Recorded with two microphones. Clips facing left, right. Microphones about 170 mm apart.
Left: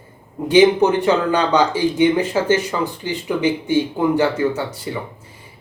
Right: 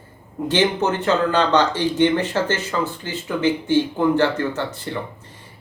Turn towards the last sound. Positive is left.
turn(degrees=10)  # may be behind; listen again after turning